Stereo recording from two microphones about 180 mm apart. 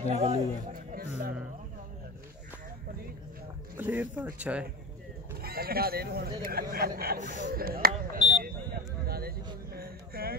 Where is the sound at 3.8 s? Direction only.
10° right (ahead or behind).